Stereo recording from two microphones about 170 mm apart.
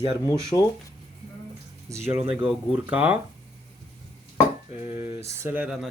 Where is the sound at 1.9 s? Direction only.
20° right (ahead or behind).